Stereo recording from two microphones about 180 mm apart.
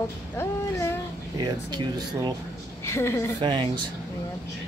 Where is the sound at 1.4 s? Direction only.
20° right (ahead or behind).